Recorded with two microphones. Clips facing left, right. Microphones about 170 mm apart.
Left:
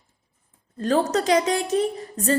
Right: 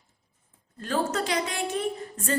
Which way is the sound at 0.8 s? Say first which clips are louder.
Left 6 dB; 40° left (ahead or behind).